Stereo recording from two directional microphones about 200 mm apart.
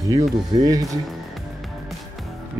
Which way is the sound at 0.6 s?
15° right (ahead or behind).